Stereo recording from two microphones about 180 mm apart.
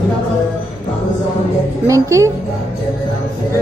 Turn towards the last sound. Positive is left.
turn(degrees=-15)  # may be behind; listen again after turning